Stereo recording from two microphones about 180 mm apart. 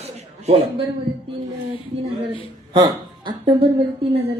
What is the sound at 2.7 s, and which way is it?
Speech, 25° right (ahead or behind).